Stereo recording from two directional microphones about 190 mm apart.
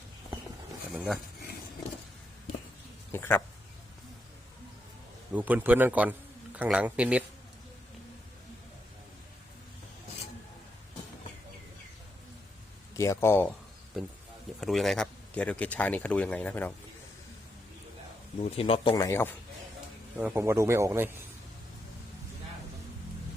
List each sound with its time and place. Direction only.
0.9 s speech: centre (ahead or behind)
3.1 s speech: 10° left (ahead or behind)
5.3 s a man's voice: 10° right (ahead or behind)
12.9 s speech: 15° left (ahead or behind)
14.6 s speech: centre (ahead or behind)
18.3 s speech: 30° left (ahead or behind)
18.9 s speech: 15° left (ahead or behind)
20.1 s a man's voice: 10° right (ahead or behind)